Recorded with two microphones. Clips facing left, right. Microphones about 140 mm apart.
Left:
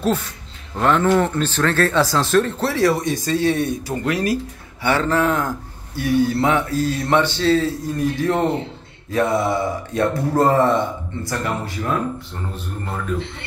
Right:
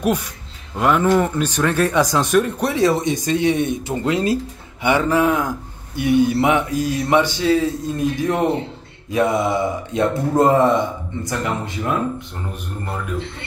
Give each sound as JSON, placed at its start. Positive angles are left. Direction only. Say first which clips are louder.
{"t": 0.0, "sound": "speech", "louder": "right 1 dB", "side_deg": -15}